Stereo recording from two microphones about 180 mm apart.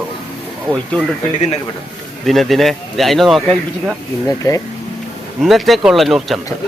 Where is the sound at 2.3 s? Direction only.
Centre (ahead or behind).